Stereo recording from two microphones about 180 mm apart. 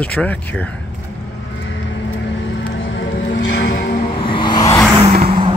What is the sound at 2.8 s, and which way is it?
Music, 90° left.